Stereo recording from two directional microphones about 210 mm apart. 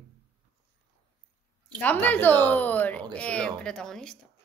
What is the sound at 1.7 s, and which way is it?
A woman's voice, 10° left (ahead or behind).